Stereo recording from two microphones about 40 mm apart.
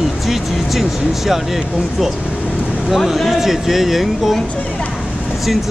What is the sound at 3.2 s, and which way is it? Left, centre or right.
Speech, centre.